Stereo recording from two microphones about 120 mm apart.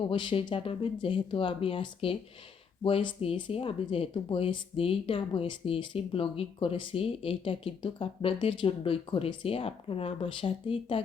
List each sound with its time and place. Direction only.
0.0 s speech: 45° left (ahead or behind)